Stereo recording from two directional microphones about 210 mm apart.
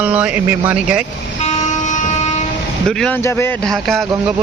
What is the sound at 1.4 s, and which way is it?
Vehicle, 35° left (ahead or behind).